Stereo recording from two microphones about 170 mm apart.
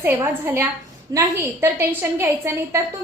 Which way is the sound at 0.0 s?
15° right (ahead or behind).